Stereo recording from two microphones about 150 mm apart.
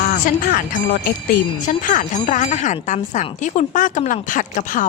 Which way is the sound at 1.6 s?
60° left (ahead or behind).